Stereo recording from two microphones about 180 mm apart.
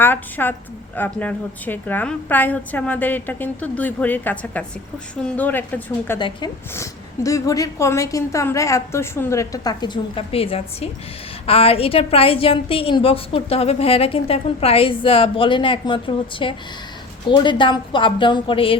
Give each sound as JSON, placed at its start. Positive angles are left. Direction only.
{"t": 0.0, "sound": "a woman's voice", "side_deg": 10}
{"t": 6.1, "sound": "a woman's voice", "side_deg": 25}